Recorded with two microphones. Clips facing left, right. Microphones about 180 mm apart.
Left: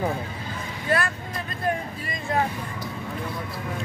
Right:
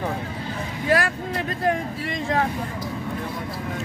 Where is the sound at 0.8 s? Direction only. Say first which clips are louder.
Right 4 dB; 90° right.